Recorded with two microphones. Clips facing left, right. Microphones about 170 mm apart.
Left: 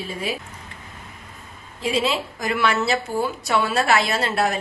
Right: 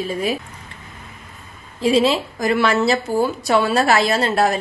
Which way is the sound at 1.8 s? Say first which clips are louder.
Right 7 dB; 35° right (ahead or behind).